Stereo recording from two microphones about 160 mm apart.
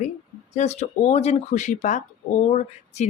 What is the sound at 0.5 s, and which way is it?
Speech, 45° left (ahead or behind).